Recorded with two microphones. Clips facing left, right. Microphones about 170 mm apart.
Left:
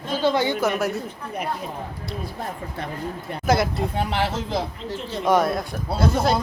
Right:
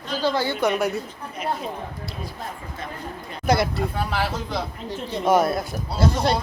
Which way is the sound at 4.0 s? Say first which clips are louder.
Left 4 dB; 25° left (ahead or behind).